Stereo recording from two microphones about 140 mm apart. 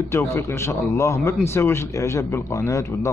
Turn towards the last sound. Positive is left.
turn(degrees=20)  # may be behind; listen again after turning